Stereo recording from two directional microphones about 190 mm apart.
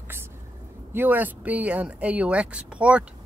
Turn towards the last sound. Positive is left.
turn(degrees=-5)  # may be behind; listen again after turning